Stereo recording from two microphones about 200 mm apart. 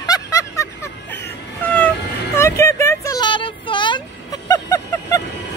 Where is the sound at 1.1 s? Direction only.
10° left (ahead or behind).